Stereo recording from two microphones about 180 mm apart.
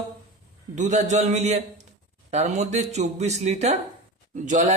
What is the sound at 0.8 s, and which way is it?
A man's voice, 40° right (ahead or behind).